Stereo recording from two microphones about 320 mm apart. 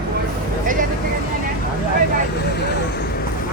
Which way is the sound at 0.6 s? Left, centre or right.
Right.